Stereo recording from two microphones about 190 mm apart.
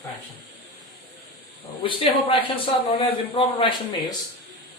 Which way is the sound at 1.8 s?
25° left (ahead or behind).